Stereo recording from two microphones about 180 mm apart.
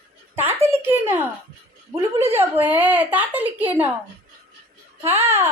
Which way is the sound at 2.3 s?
10° right (ahead or behind).